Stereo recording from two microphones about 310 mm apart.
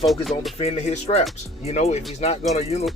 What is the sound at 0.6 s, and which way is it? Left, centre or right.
Speech, centre.